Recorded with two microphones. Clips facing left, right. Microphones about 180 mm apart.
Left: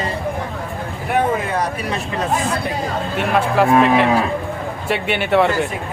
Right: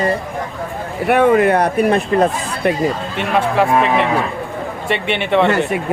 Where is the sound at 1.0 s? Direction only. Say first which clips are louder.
Right 8 dB; 70° right (ahead or behind); by 2.7 s 55° right (ahead or behind).